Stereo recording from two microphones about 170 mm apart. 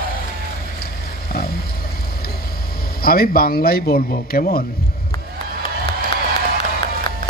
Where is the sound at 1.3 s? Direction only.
65° left (ahead or behind).